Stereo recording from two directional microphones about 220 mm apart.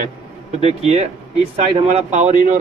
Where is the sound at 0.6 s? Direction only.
30° right (ahead or behind).